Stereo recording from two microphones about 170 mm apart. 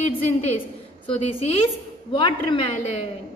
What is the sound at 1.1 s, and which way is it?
A woman's voice, 35° left (ahead or behind).